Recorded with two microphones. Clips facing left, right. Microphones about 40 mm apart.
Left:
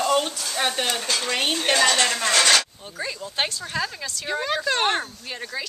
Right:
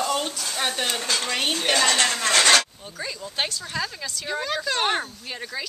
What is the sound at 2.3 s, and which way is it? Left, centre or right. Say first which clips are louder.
Speech: right 1 dB; right.